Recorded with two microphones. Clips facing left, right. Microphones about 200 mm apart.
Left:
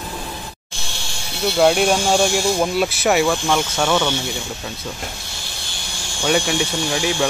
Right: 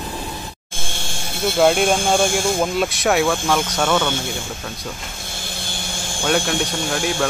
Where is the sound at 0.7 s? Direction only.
50° right (ahead or behind).